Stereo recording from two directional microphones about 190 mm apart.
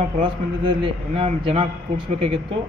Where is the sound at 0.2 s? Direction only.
30° right (ahead or behind).